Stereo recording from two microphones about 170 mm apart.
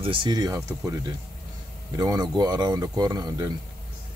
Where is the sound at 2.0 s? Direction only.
20° right (ahead or behind).